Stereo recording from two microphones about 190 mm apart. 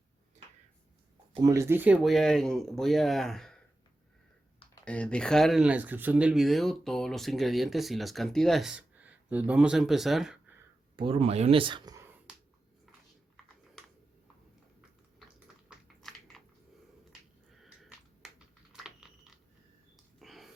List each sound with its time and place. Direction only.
1.3 s speech: 20° right (ahead or behind); by 3.6 s centre (ahead or behind)
4.7 s speech: 5° left (ahead or behind)
10.9 s speech: 30° right (ahead or behind)
16.0 s typing: centre (ahead or behind)
17.5 s computer keyboard: centre (ahead or behind)
20.1 s a sound: centre (ahead or behind)